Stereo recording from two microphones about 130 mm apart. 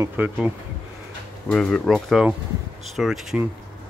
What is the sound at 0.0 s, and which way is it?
Speech, 15° right (ahead or behind).